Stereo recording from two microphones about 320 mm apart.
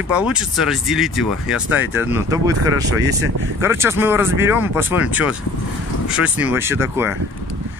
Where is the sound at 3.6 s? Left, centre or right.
Centre.